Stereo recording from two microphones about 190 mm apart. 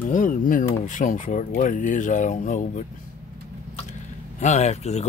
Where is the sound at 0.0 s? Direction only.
45° left (ahead or behind).